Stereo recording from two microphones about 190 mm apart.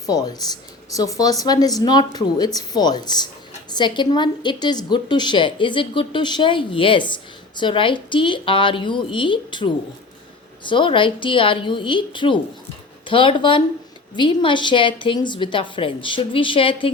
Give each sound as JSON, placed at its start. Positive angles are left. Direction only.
{"t": 0.0, "sound": "a woman's voice", "side_deg": 20}